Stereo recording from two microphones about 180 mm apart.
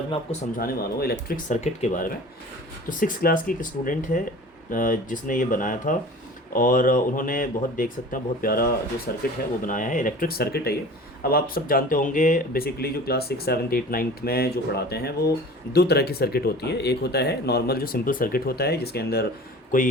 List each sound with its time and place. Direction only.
0.5 s speech: 55° left (ahead or behind)
1.6 s speech: 40° left (ahead or behind); by 19.2 s 60° left (ahead or behind)